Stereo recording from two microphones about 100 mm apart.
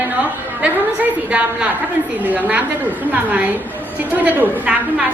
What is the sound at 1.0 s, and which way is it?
A woman's voice, 15° right (ahead or behind).